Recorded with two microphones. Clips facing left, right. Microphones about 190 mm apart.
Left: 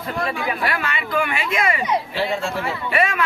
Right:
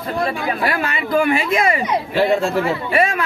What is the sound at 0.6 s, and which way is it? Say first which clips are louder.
Speech: right 4 dB; 40° right (ahead or behind).